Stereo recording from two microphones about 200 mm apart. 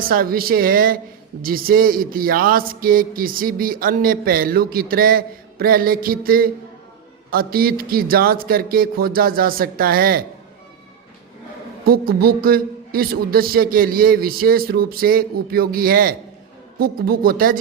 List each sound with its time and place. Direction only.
0.1 s a man's voice: 45° right (ahead or behind)
11.9 s a man's voice: 50° right (ahead or behind)